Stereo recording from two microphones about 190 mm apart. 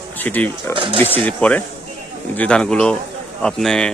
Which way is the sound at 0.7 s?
25° right (ahead or behind).